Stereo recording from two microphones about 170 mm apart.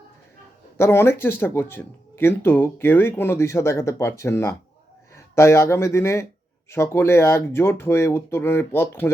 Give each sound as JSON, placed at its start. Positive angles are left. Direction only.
{"t": 0.8, "sound": "speech", "side_deg": 15}